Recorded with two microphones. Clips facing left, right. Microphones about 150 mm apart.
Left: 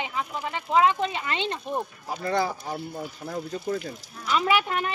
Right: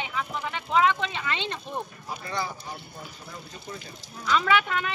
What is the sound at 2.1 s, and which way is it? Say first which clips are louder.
Speech: left 9 dB; 60° left (ahead or behind).